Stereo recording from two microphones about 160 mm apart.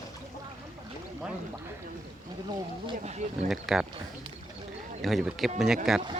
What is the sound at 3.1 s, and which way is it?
Speech, 45° right (ahead or behind).